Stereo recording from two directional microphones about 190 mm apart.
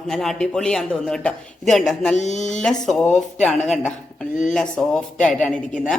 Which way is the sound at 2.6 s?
Centre (ahead or behind).